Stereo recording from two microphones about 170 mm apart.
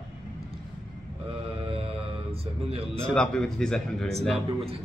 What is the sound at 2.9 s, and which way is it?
A man's voice, 5° left (ahead or behind).